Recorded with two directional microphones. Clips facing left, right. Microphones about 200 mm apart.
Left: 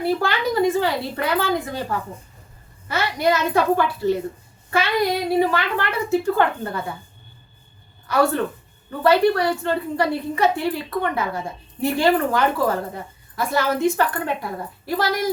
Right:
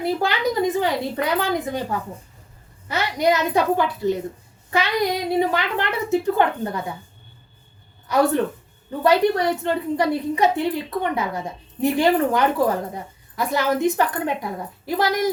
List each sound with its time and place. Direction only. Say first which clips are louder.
0.0 s a woman's voice: even; 20° right (ahead or behind)
8.0 s a woman's voice: right 1 dB; 20° right (ahead or behind)